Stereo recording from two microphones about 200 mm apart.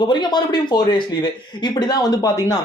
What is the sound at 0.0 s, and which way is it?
Speech, 20° left (ahead or behind).